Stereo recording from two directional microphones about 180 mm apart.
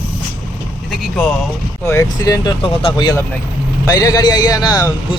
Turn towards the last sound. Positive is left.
turn(degrees=25)  # may be behind; listen again after turning